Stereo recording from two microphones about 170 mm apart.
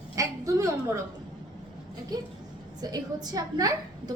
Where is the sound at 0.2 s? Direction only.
20° right (ahead or behind).